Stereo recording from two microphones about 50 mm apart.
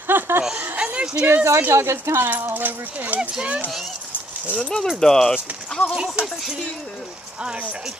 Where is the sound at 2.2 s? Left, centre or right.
Right.